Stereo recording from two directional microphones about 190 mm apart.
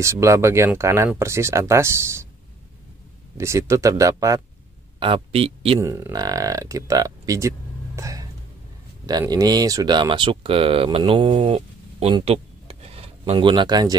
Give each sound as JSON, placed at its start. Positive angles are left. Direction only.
{"t": 0.0, "sound": "speech", "side_deg": -15}
{"t": 3.3, "sound": "speech", "side_deg": -15}
{"t": 5.0, "sound": "speech", "side_deg": -30}
{"t": 5.8, "sound": "speech", "side_deg": -15}